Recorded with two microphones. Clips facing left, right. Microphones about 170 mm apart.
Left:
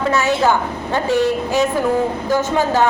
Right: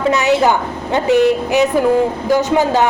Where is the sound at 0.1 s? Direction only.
20° right (ahead or behind).